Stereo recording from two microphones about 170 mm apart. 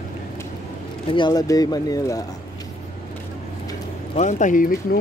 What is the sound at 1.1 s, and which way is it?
Speech, 25° left (ahead or behind).